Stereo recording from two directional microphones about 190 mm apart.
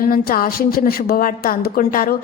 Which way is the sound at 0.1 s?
50° left (ahead or behind).